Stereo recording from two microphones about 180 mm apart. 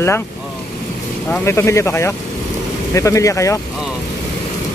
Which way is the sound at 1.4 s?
15° left (ahead or behind).